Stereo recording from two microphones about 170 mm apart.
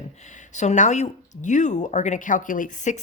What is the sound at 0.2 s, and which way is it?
A woman's voice, 45° left (ahead or behind).